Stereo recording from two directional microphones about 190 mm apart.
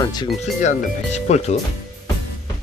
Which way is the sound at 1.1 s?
35° left (ahead or behind).